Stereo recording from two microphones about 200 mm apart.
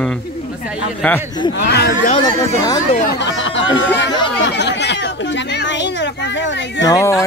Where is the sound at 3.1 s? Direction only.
60° left (ahead or behind).